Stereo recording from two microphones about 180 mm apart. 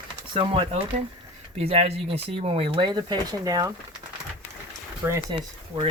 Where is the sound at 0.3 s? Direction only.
30° right (ahead or behind).